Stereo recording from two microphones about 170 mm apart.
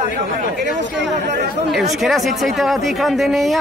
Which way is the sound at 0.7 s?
90° right.